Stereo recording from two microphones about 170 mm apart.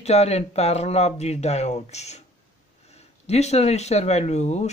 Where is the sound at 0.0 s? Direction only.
40° left (ahead or behind).